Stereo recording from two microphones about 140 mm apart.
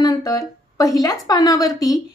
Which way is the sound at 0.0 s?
25° left (ahead or behind).